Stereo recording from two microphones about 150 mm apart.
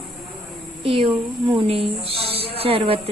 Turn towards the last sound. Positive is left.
turn(degrees=-40)  # may be behind; listen again after turning